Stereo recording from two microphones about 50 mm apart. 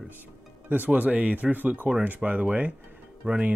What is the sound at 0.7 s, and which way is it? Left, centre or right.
Speech, right.